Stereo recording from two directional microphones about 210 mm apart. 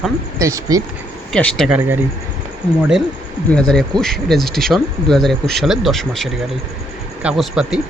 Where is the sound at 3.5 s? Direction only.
5° left (ahead or behind).